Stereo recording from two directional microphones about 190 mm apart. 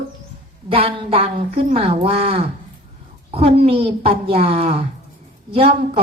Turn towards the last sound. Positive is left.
turn(degrees=-30)  # may be behind; listen again after turning